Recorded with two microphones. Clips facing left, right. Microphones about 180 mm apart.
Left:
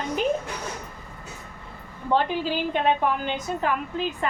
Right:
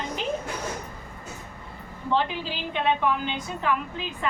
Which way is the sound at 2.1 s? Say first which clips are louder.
Left 3 dB; 45° left (ahead or behind).